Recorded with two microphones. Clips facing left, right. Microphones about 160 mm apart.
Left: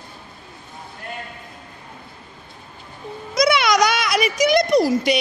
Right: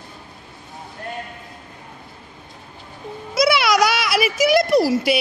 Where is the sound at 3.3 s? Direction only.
5° right (ahead or behind).